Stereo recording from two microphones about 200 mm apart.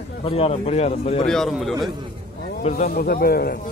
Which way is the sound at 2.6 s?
40° left (ahead or behind).